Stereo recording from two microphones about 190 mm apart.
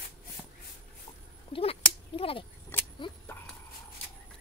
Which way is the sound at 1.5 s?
30° left (ahead or behind).